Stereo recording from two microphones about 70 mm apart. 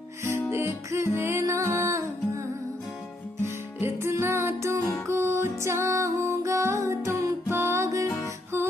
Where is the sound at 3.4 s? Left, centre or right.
Right.